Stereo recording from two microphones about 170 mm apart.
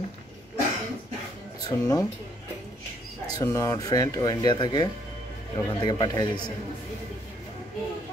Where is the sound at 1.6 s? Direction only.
20° left (ahead or behind).